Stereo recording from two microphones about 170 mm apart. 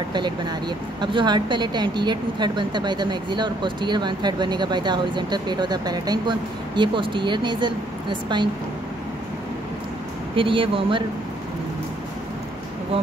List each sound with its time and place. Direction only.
0.1 s speech: 25° right (ahead or behind)
10.3 s speech: 30° right (ahead or behind)